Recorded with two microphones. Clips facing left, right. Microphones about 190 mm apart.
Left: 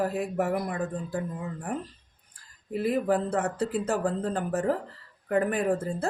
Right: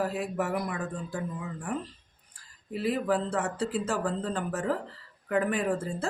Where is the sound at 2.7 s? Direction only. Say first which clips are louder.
Left 2 dB; 50° left (ahead or behind).